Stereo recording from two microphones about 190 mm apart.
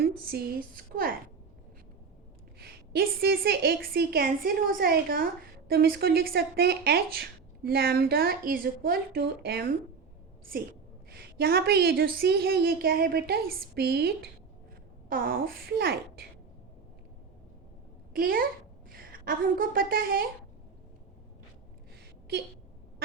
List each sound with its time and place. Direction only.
0.3 s a sound: 55° right (ahead or behind)
2.6 s a woman's voice: 55° right (ahead or behind)
11.1 s a woman's voice: 55° right (ahead or behind)
18.1 s a child's voice: 50° right (ahead or behind)